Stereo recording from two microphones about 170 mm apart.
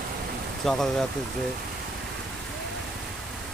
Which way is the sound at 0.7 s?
Centre (ahead or behind).